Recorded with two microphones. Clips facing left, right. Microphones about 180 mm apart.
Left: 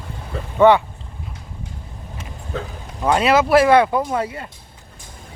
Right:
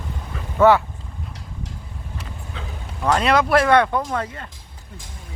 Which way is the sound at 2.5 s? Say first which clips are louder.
Left 11 dB; 45° left (ahead or behind).